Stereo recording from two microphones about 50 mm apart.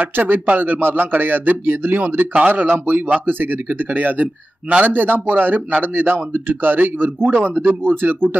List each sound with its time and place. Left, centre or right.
0.1 s speech: right